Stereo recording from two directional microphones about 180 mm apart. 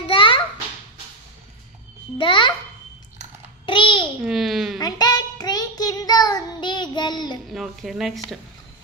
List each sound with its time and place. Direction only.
0.0 s babbling: 30° left (ahead or behind)
2.1 s a child's voice: 25° left (ahead or behind)
3.6 s a sound: 25° left (ahead or behind)
4.2 s a child's voice: centre (ahead or behind)
4.7 s child singing: 20° left (ahead or behind)
7.5 s a woman's voice: centre (ahead or behind)